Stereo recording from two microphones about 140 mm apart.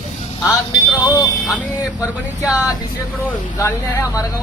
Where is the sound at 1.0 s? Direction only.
25° left (ahead or behind).